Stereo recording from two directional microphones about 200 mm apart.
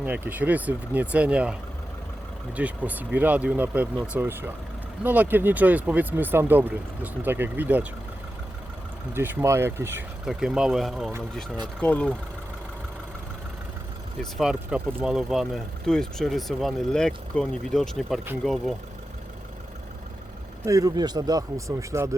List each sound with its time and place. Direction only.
0.0 s speech: 10° right (ahead or behind)
2.6 s speech: 5° right (ahead or behind)
9.1 s speech: 10° right (ahead or behind); by 12.1 s 5° left (ahead or behind)
14.2 s speech: centre (ahead or behind)
20.7 s speech: 15° right (ahead or behind)